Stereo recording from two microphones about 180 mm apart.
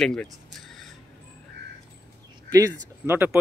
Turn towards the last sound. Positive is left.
turn(degrees=-10)  # may be behind; listen again after turning